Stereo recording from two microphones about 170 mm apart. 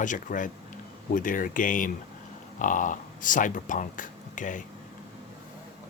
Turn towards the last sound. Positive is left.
turn(degrees=50)  # may be behind; listen again after turning